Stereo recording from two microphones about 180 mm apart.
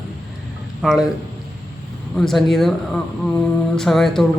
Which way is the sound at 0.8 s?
5° right (ahead or behind).